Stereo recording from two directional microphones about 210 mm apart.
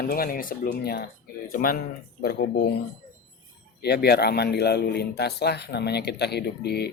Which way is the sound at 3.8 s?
50° left (ahead or behind).